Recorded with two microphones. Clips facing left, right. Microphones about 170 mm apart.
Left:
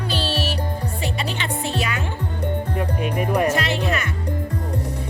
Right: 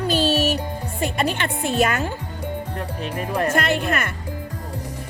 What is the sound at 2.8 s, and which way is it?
Music, 10° left (ahead or behind).